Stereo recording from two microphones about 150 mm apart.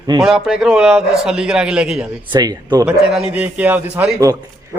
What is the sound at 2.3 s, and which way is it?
Speech, 25° right (ahead or behind).